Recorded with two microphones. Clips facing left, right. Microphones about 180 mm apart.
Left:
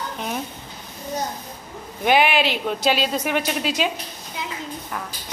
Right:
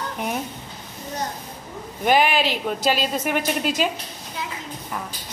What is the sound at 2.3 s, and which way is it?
Speech, 40° right (ahead or behind).